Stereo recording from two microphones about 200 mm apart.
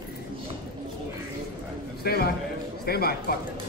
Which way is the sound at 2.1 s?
55° left (ahead or behind).